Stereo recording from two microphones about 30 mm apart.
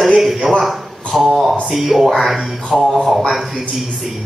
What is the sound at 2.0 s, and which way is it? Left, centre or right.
Music, centre.